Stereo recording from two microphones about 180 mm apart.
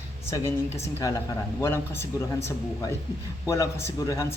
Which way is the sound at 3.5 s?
15° left (ahead or behind).